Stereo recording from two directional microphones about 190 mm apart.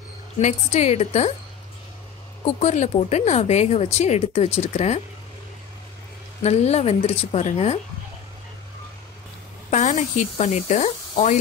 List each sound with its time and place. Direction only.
0.4 s speech: 35° left (ahead or behind)
2.4 s speech: 35° left (ahead or behind)
6.4 s speech: 35° left (ahead or behind)
9.7 s speech: 40° left (ahead or behind)